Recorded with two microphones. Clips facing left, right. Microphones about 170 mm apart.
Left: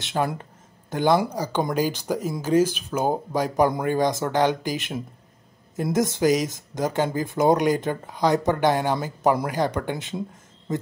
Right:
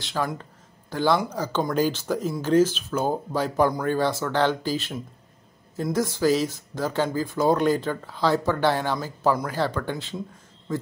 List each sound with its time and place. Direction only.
0.0 s speech: 20° left (ahead or behind)